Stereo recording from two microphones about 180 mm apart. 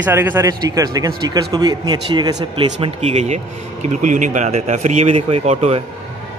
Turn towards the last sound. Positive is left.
turn(degrees=-35)  # may be behind; listen again after turning